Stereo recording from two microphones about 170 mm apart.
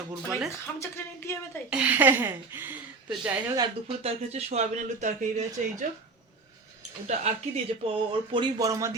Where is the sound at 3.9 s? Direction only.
35° right (ahead or behind).